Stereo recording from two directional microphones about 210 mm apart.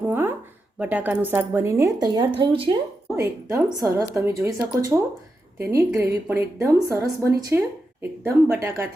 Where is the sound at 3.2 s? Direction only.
15° right (ahead or behind).